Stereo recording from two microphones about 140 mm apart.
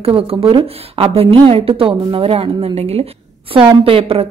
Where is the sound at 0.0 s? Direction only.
45° right (ahead or behind).